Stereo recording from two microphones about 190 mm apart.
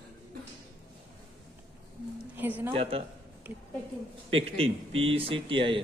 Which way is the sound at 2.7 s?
30° right (ahead or behind).